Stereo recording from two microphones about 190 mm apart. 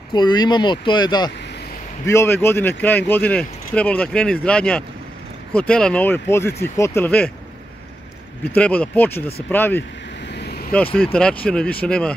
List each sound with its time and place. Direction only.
0.1 s speech: 20° left (ahead or behind)
8.5 s speech: 5° left (ahead or behind)
10.2 s vehicle: 60° left (ahead or behind)
11.1 s speech: 5° left (ahead or behind)